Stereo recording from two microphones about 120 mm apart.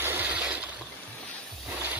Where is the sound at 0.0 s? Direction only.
15° right (ahead or behind).